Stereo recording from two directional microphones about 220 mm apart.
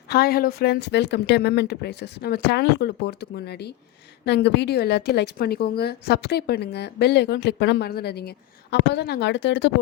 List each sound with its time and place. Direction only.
0.1 s a woman's voice: 45° left (ahead or behind)